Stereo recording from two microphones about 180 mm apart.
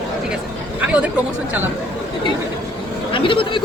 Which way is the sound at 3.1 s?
30° left (ahead or behind).